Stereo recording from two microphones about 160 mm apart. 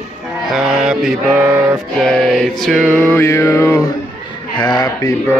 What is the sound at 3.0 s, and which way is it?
Male singing, 15° left (ahead or behind).